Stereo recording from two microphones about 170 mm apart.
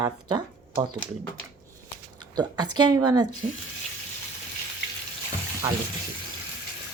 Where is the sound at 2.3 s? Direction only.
25° right (ahead or behind).